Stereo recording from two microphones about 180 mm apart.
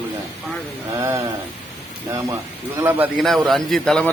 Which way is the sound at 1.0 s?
15° right (ahead or behind).